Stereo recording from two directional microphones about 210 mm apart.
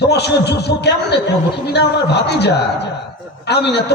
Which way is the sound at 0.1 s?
50° left (ahead or behind).